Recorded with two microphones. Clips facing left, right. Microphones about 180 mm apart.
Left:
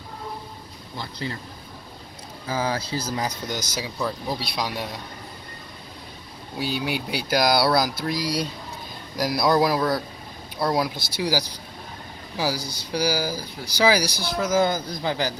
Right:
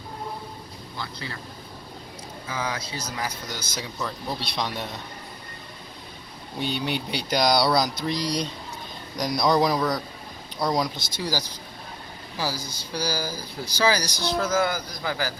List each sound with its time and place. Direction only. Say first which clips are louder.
0.9 s a man's voice: left 4 dB; 30° left (ahead or behind)
2.5 s speech: left 5 dB; 30° left (ahead or behind)
3.8 s speech: left 2 dB; 5° left (ahead or behind)
6.6 s speech: left 1 dB; 5° left (ahead or behind)
14.1 s speech: right 2 dB; 20° right (ahead or behind)
14.5 s a man's voice: left 3 dB; 20° left (ahead or behind)